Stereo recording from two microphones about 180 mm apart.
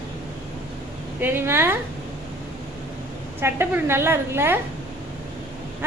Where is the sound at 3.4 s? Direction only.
15° right (ahead or behind).